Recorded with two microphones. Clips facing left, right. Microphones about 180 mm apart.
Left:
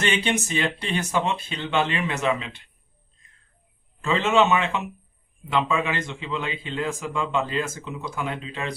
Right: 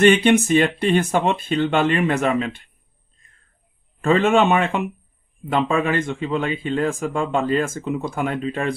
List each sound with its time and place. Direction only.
0.0 s speech: 55° right (ahead or behind)
3.2 s bird: 55° right (ahead or behind)
4.0 s speech: 55° right (ahead or behind)